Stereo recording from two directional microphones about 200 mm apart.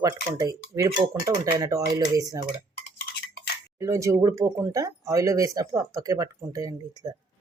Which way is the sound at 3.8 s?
15° right (ahead or behind).